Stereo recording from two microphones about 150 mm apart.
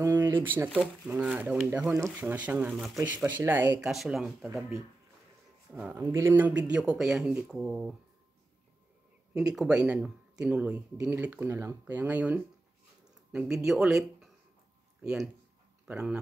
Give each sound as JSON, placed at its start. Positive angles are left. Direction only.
{"t": 0.0, "sound": "speech", "side_deg": -15}
{"t": 5.7, "sound": "speech", "side_deg": -10}
{"t": 9.3, "sound": "speech", "side_deg": -5}
{"t": 15.0, "sound": "speech", "side_deg": -5}